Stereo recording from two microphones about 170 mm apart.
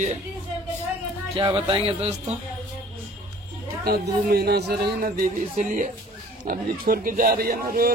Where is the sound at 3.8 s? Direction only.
65° right (ahead or behind).